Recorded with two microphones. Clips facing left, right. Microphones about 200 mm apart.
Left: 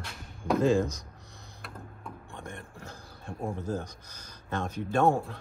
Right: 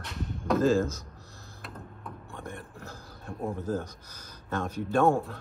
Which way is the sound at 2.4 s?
5° right (ahead or behind).